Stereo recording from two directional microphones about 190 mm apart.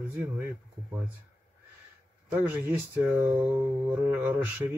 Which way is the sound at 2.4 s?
10° right (ahead or behind).